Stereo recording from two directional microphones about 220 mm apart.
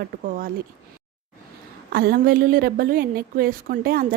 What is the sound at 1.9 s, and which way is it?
Speech, 45° right (ahead or behind).